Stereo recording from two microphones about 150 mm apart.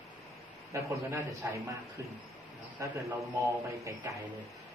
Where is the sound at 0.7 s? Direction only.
20° right (ahead or behind).